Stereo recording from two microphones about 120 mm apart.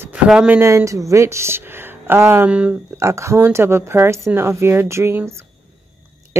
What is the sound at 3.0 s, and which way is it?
Speech, 25° right (ahead or behind).